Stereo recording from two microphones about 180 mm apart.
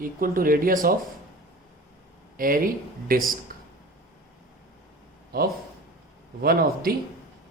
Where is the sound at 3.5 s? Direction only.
55° right (ahead or behind).